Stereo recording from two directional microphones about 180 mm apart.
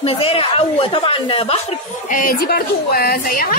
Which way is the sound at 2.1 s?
50° left (ahead or behind).